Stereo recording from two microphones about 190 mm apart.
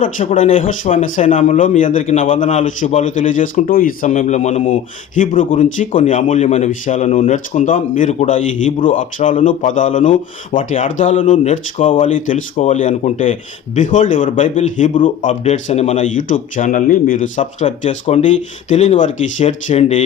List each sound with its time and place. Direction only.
0.0 s a man's voice: 45° left (ahead or behind)